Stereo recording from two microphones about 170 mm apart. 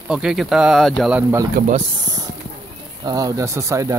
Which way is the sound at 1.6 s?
55° right (ahead or behind).